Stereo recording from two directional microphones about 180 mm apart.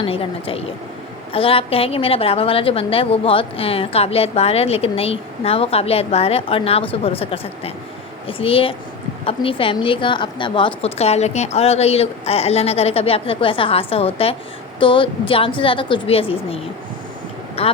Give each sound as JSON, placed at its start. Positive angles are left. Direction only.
{"t": 0.0, "sound": "a woman's voice", "side_deg": 30}
{"t": 17.6, "sound": "speech", "side_deg": 30}